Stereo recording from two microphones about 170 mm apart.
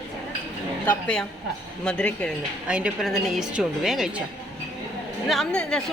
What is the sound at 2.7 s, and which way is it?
A woman's voice, 5° right (ahead or behind).